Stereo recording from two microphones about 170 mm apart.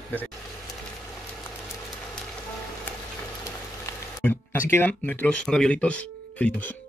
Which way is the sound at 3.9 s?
20° left (ahead or behind).